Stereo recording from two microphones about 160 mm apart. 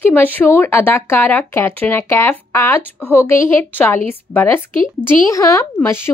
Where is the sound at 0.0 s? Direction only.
10° left (ahead or behind).